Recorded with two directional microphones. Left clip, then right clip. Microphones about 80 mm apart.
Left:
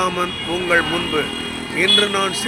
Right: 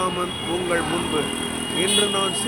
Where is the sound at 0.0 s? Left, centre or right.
Left.